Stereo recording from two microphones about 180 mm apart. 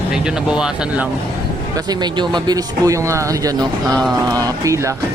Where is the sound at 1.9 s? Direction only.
25° right (ahead or behind).